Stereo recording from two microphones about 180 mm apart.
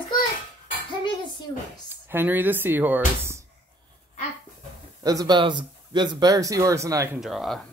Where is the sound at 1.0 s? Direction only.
25° left (ahead or behind).